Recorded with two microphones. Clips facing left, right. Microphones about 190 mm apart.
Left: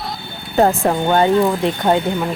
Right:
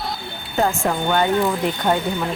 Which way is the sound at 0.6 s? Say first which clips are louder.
Left 5 dB; 35° left (ahead or behind).